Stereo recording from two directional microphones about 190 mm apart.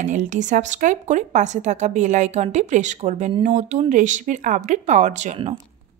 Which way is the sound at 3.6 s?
40° right (ahead or behind).